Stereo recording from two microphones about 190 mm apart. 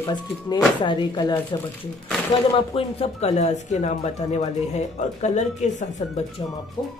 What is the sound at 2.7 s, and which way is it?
Speech, 30° left (ahead or behind).